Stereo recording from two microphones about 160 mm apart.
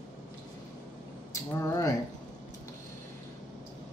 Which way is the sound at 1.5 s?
20° left (ahead or behind).